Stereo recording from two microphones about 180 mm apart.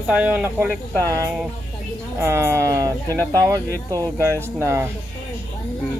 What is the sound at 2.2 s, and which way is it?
Speech, 15° right (ahead or behind).